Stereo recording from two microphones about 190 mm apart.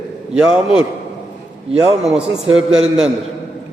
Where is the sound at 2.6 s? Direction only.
5° right (ahead or behind).